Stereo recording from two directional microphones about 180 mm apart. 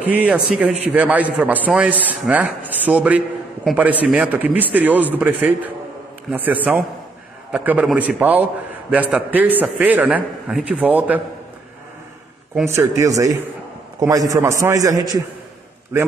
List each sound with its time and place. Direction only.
0.0 s a man's voice: 10° right (ahead or behind)
6.3 s a man's voice: 10° right (ahead or behind)
12.6 s a man's voice: 15° right (ahead or behind)